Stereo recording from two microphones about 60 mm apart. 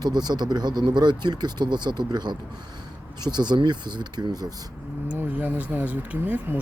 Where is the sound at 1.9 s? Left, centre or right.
Right.